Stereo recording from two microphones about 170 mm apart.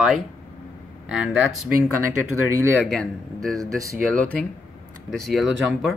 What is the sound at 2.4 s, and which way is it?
Speech, 15° right (ahead or behind).